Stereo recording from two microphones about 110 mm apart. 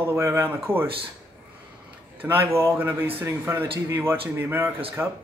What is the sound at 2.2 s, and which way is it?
Speech, 20° right (ahead or behind).